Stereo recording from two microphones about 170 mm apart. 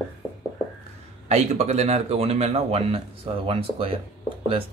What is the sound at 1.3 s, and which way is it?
Speech, 40° right (ahead or behind).